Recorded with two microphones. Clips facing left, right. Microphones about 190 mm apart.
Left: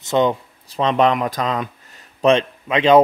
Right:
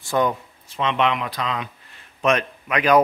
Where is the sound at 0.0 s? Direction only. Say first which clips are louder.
Left 4 dB; 20° left (ahead or behind).